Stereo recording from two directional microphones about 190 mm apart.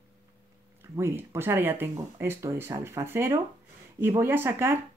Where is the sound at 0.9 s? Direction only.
15° right (ahead or behind).